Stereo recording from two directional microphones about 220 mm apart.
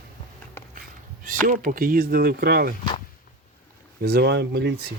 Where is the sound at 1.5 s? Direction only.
40° right (ahead or behind).